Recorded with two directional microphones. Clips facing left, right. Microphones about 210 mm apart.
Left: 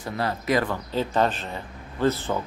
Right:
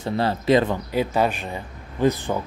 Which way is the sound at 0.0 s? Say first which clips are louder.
Right 5 dB; 25° right (ahead or behind).